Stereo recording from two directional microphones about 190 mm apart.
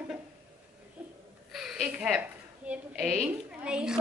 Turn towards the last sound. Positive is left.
turn(degrees=-5)  # may be behind; listen again after turning